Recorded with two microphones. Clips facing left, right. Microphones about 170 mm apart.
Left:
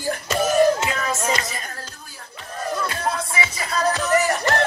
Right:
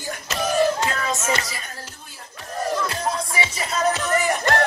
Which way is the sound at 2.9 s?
30° right (ahead or behind).